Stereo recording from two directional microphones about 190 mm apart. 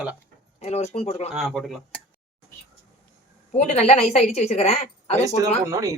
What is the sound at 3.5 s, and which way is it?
A woman's voice, 40° left (ahead or behind).